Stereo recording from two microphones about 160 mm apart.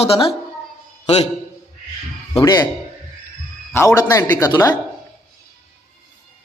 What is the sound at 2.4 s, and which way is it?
Speech, 25° left (ahead or behind).